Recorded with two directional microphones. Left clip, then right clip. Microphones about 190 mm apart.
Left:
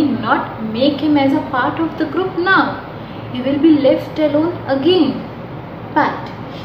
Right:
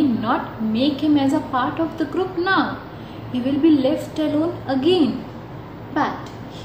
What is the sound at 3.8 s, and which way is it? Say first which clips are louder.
A woman's voice: left 7 dB; 20° right (ahead or behind).